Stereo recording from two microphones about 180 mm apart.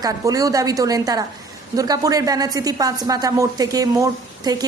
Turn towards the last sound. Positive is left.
turn(degrees=-20)  # may be behind; listen again after turning